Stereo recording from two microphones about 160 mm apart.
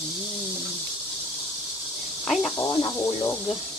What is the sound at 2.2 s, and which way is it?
Speech, 5° left (ahead or behind).